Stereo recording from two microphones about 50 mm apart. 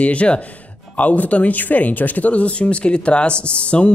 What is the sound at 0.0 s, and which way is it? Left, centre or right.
Speech, left.